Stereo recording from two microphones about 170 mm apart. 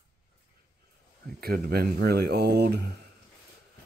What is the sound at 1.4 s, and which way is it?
Speech, 65° right (ahead or behind).